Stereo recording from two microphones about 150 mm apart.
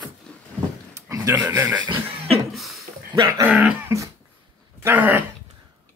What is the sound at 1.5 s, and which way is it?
Speech, 15° right (ahead or behind).